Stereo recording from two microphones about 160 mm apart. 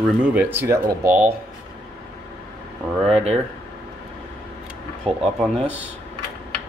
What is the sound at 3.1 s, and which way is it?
Speech, 40° right (ahead or behind).